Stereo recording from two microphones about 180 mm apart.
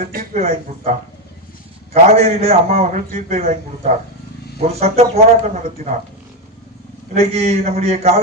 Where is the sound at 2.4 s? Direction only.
35° right (ahead or behind).